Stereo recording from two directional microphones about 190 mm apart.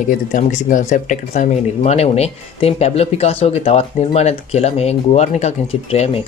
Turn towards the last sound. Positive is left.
turn(degrees=35)  # may be behind; listen again after turning